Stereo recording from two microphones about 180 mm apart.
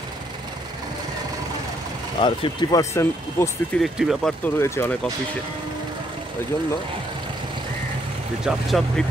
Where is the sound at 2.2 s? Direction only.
25° left (ahead or behind).